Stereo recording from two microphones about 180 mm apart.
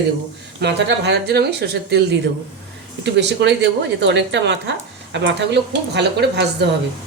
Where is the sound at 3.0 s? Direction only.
80° right.